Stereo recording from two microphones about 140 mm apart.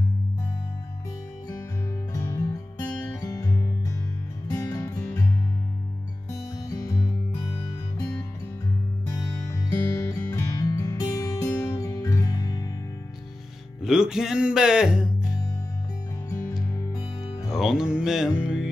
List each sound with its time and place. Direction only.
2.1 s music: 20° left (ahead or behind)
6.3 s music: 25° left (ahead or behind)
9.9 s music: 25° left (ahead or behind)
13.8 s speech: 5° right (ahead or behind)
16.3 s music: 20° left (ahead or behind)
17.5 s music: centre (ahead or behind)